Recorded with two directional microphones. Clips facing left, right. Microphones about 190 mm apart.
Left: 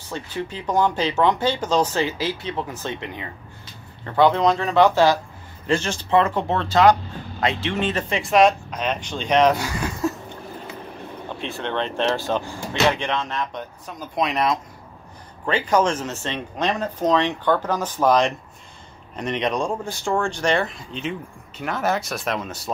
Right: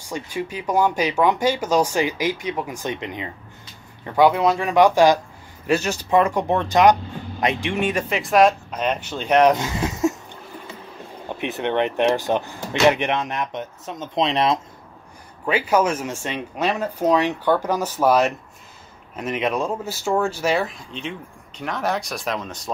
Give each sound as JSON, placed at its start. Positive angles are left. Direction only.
{"t": 0.1, "sound": "speech", "side_deg": -10}
{"t": 8.2, "sound": "speech", "side_deg": 0}
{"t": 11.3, "sound": "speech", "side_deg": -20}
{"t": 15.4, "sound": "speech", "side_deg": -10}